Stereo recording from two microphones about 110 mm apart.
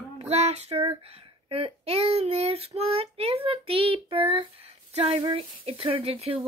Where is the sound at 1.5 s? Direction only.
60° right (ahead or behind).